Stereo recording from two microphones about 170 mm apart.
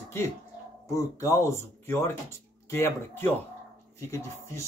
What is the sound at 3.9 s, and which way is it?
Speech, 15° left (ahead or behind).